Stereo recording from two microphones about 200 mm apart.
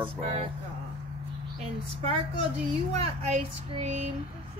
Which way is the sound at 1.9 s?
30° right (ahead or behind).